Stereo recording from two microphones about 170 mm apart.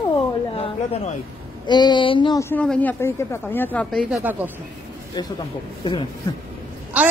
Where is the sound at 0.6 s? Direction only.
40° left (ahead or behind).